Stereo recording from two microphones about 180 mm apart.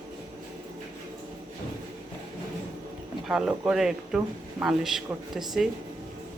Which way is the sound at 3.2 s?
5° right (ahead or behind).